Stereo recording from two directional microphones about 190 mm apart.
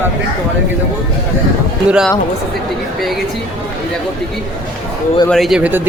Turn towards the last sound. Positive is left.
turn(degrees=-10)  # may be behind; listen again after turning